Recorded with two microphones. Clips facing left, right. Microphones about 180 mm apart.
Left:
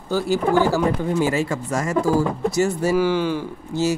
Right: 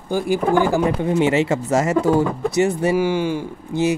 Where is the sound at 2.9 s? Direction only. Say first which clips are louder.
Even; 10° right (ahead or behind).